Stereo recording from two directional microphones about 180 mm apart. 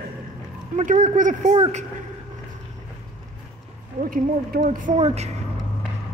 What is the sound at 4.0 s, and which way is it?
A woman's voice, 50° right (ahead or behind).